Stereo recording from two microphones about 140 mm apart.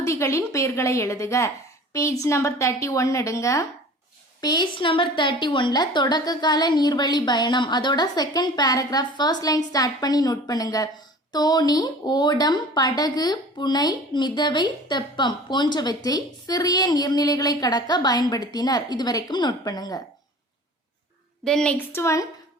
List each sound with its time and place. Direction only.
0.0 s a woman's voice: 20° left (ahead or behind)
21.4 s a woman's voice: 5° left (ahead or behind)
21.9 s a woman's voice: 20° left (ahead or behind)